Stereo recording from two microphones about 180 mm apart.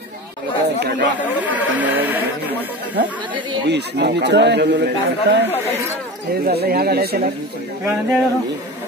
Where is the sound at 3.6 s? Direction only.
70° right (ahead or behind).